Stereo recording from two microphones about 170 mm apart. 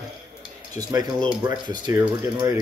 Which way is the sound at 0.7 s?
20° right (ahead or behind).